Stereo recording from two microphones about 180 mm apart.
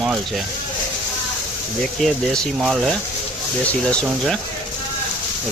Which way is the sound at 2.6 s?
Centre (ahead or behind).